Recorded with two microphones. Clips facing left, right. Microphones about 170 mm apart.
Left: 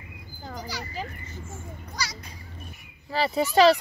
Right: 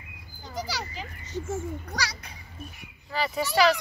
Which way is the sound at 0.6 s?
80° right.